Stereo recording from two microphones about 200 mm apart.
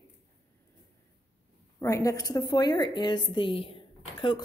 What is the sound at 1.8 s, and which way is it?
A woman's voice, 15° left (ahead or behind).